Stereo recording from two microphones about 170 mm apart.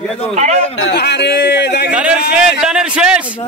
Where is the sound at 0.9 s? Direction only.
80° left.